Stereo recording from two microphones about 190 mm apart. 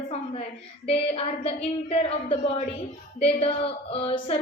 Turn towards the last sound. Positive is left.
turn(degrees=30)  # may be behind; listen again after turning